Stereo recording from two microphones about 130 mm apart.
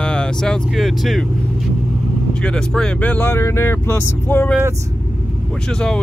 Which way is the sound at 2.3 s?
5° left (ahead or behind).